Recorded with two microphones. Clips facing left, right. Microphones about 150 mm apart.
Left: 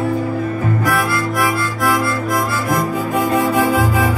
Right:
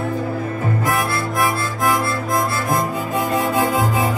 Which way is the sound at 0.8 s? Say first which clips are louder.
Left 2 dB; 20° right (ahead or behind).